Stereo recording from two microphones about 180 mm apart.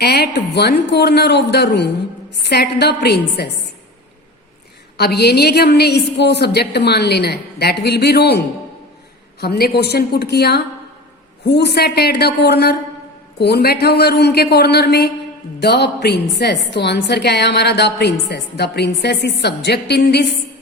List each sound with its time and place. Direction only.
0.0 s a woman's voice: 65° left (ahead or behind)
4.9 s a woman's voice: 65° left (ahead or behind)